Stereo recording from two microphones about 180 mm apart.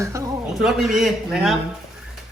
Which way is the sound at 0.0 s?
15° right (ahead or behind).